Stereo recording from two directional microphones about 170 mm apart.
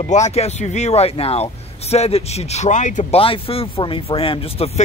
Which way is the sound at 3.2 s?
35° left (ahead or behind).